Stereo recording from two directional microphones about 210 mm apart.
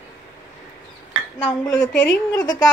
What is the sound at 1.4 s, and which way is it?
Speech, 15° left (ahead or behind).